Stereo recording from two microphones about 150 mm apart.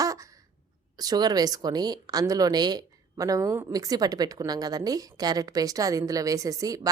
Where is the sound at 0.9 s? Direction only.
25° right (ahead or behind).